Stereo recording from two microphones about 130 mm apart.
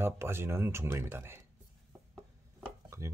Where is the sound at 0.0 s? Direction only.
20° right (ahead or behind).